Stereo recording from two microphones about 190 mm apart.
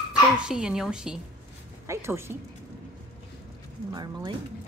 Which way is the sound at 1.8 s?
15° right (ahead or behind).